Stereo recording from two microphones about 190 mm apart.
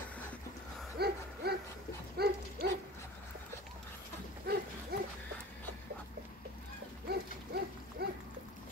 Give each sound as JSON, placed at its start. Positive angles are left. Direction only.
{"t": 0.9, "sound": "hoot", "side_deg": -55}
{"t": 2.1, "sound": "livestock", "side_deg": -55}
{"t": 4.5, "sound": "dog", "side_deg": -55}
{"t": 4.9, "sound": "music", "side_deg": -60}
{"t": 7.1, "sound": "hoot", "side_deg": -55}